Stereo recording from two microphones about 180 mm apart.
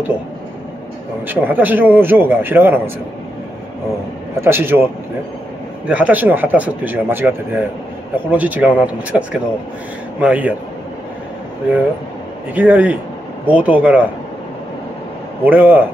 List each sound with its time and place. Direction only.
1.2 s speech: 10° right (ahead or behind)
4.4 s speech: 15° right (ahead or behind)
5.9 s speech: 10° right (ahead or behind)
12.5 s speech: 10° right (ahead or behind)
15.4 s speech: 10° right (ahead or behind)